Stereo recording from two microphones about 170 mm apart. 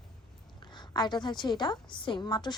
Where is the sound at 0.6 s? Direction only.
25° left (ahead or behind).